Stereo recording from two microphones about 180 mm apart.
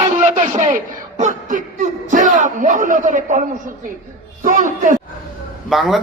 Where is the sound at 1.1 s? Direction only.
45° right (ahead or behind).